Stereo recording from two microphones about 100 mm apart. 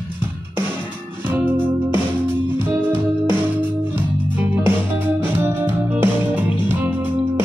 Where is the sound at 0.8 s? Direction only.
50° left (ahead or behind).